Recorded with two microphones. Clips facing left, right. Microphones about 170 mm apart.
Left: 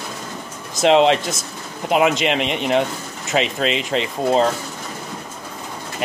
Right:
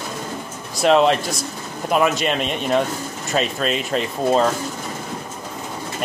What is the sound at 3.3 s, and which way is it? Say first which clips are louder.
Speech: left 1 dB; 90° left.